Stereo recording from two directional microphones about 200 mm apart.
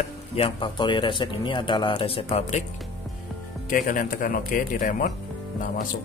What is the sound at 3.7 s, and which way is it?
Speech, 40° left (ahead or behind).